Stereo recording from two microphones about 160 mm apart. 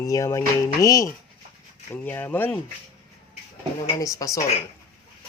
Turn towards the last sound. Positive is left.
turn(degrees=20)  # may be behind; listen again after turning